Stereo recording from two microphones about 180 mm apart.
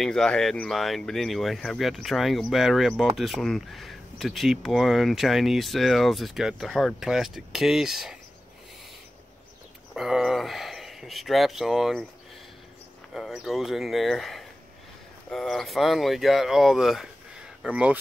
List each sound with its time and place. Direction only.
0.0 s speech: 5° left (ahead or behind)
9.9 s speech: 5° right (ahead or behind)
13.1 s speech: centre (ahead or behind)